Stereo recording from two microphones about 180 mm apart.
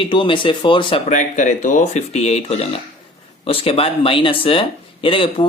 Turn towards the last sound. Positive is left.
turn(degrees=30)  # may be behind; listen again after turning